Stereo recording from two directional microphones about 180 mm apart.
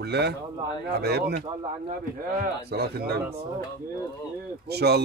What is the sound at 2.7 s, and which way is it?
Speech, 60° right (ahead or behind).